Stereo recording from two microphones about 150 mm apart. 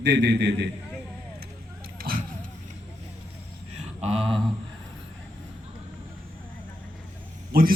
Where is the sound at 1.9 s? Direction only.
75° right (ahead or behind).